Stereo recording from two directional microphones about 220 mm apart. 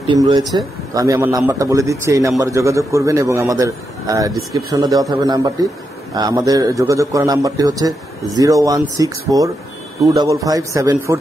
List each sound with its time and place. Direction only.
0.1 s a man's voice: 20° right (ahead or behind)